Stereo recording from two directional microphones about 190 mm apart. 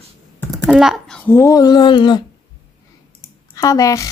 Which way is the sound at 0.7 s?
Centre (ahead or behind).